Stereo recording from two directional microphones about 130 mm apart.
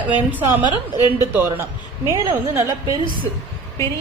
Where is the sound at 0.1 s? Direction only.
15° right (ahead or behind).